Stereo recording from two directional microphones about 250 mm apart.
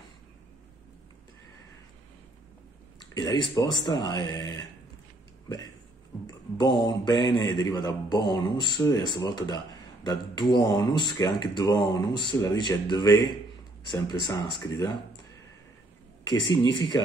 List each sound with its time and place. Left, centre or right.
3.0 s a sound: centre
3.5 s speech: centre
6.2 s a man's voice: centre
16.3 s speech: centre